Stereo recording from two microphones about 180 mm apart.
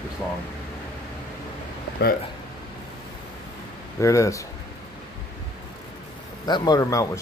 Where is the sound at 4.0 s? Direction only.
15° left (ahead or behind).